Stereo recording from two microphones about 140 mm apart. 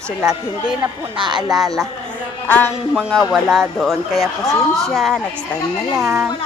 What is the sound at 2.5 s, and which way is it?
Speech, 15° left (ahead or behind).